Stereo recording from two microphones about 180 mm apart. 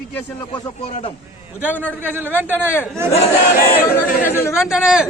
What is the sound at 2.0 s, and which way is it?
Speech, 10° right (ahead or behind).